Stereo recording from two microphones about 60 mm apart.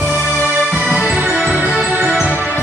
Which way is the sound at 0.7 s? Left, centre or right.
Centre.